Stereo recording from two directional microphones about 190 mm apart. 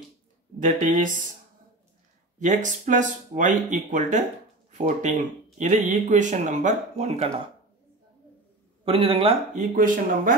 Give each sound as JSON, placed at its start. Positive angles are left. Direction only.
{"t": 0.6, "sound": "speech", "side_deg": -45}
{"t": 2.3, "sound": "speech", "side_deg": -40}
{"t": 8.8, "sound": "speech", "side_deg": -30}
{"t": 9.6, "sound": "speech", "side_deg": -45}